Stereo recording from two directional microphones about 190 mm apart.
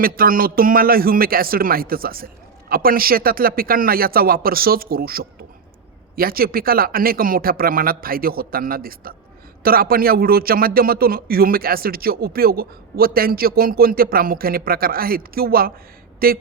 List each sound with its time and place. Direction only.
0.0 s a man's voice: 50° right (ahead or behind)